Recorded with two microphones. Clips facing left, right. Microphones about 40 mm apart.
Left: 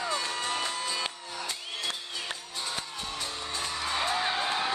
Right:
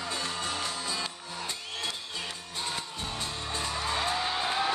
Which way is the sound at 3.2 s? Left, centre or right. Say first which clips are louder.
Even; right.